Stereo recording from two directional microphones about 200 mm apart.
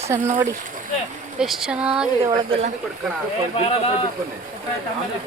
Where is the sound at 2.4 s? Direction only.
30° right (ahead or behind).